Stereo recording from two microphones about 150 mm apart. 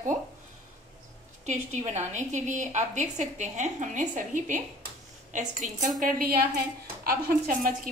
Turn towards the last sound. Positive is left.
turn(degrees=-70)  # may be behind; listen again after turning